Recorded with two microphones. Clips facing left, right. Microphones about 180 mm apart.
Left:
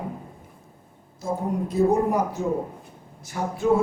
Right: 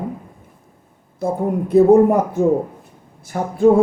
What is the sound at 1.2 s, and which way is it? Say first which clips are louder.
A woman's voice: right 6 dB; 60° right (ahead or behind).